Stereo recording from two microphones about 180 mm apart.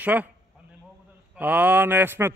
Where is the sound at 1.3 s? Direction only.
10° right (ahead or behind).